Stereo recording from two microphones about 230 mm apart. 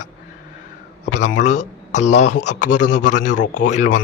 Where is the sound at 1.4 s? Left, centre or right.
Left.